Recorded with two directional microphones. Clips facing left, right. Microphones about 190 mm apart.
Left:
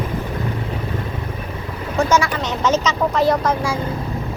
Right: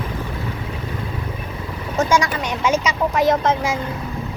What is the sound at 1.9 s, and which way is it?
Speech, 20° right (ahead or behind).